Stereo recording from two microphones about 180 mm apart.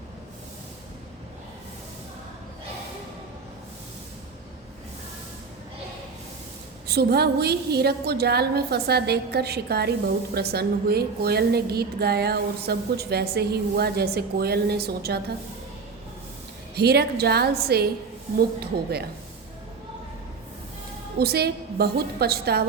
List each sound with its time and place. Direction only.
6.8 s a woman's voice: 60° right (ahead or behind)
16.7 s a woman's voice: 65° right (ahead or behind)
21.2 s a woman's voice: 60° right (ahead or behind)